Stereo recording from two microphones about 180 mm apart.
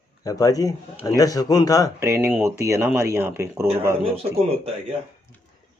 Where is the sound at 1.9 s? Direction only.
15° right (ahead or behind).